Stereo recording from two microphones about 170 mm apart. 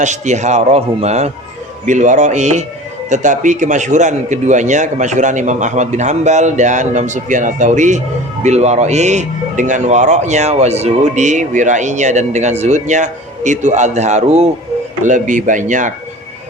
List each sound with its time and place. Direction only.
0.0 s speech: 45° right (ahead or behind)